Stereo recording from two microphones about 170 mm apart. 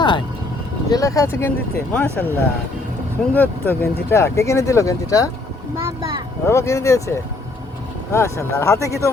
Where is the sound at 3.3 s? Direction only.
10° left (ahead or behind).